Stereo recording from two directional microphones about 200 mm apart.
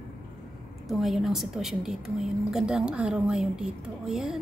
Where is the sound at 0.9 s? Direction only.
Centre (ahead or behind).